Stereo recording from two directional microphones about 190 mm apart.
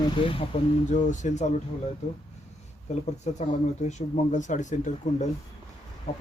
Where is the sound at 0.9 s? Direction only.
40° left (ahead or behind).